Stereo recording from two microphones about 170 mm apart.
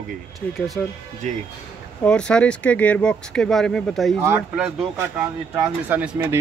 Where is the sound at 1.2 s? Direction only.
45° right (ahead or behind).